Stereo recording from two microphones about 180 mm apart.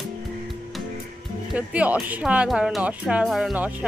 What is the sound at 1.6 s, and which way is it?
Speech, 10° right (ahead or behind).